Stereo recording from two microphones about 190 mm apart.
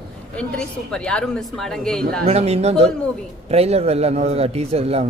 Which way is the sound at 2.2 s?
35° right (ahead or behind).